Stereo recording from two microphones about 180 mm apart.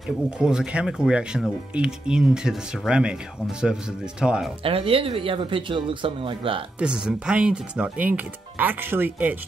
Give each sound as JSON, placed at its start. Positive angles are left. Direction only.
{"t": 0.4, "sound": "speech", "side_deg": -5}
{"t": 4.6, "sound": "speech", "side_deg": -30}
{"t": 6.8, "sound": "speech", "side_deg": -5}